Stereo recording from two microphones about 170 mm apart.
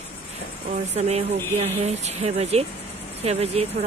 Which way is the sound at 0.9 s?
40° right (ahead or behind).